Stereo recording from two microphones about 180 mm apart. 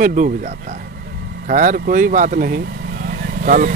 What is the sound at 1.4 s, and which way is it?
Speech, 50° right (ahead or behind).